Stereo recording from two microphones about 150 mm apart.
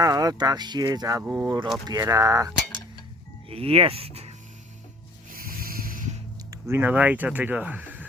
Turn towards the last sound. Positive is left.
turn(degrees=-10)  # may be behind; listen again after turning